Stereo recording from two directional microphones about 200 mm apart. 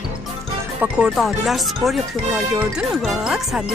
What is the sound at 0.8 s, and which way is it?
Speech, 5° right (ahead or behind).